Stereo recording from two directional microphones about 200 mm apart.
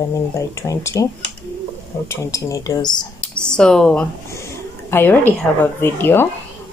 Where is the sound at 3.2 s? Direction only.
5° left (ahead or behind).